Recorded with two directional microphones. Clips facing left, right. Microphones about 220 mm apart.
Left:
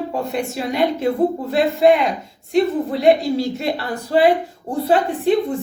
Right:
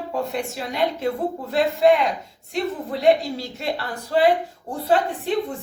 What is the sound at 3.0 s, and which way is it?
A woman's voice, 10° left (ahead or behind).